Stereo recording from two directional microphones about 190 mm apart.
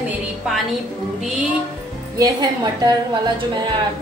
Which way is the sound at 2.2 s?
20° right (ahead or behind).